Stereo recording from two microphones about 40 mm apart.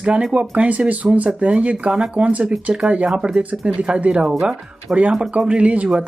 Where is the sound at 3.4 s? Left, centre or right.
Right.